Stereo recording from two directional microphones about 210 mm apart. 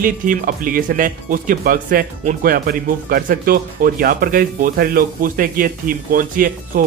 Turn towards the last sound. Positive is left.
turn(degrees=-45)  # may be behind; listen again after turning